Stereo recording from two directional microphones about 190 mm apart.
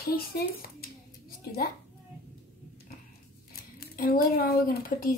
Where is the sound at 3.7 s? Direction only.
50° left (ahead or behind).